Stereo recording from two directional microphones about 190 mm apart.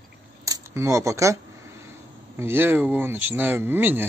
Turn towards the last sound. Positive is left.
turn(degrees=-10)  # may be behind; listen again after turning